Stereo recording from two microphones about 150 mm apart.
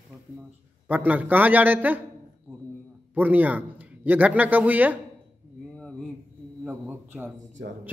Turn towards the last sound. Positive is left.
turn(degrees=-90)